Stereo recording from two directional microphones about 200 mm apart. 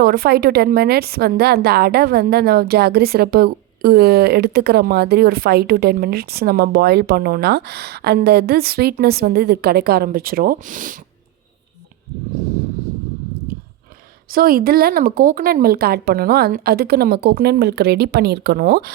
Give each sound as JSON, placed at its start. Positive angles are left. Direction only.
{"t": 0.0, "sound": "a woman's voice", "side_deg": -50}
{"t": 14.3, "sound": "a woman's voice", "side_deg": -45}